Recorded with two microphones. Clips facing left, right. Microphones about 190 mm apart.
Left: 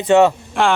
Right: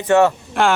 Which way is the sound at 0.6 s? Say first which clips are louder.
Even; centre (ahead or behind).